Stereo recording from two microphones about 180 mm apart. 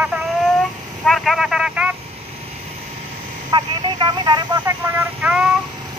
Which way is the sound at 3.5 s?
25° right (ahead or behind).